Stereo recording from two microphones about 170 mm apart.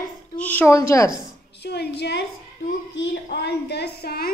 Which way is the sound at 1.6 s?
75° left (ahead or behind).